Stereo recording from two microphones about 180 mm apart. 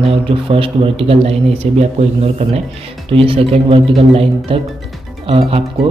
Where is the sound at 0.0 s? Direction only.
30° right (ahead or behind).